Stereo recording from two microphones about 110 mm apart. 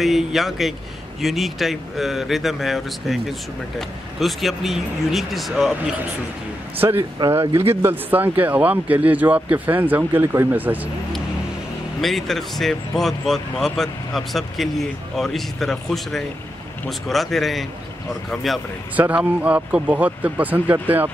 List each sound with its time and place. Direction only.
0.0 s speech: centre (ahead or behind)
4.2 s speech: centre (ahead or behind)
6.8 s speech: 20° right (ahead or behind)
12.0 s speech: centre (ahead or behind)
18.9 s speech: 15° right (ahead or behind)